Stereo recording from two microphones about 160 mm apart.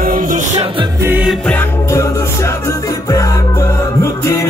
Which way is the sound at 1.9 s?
20° left (ahead or behind).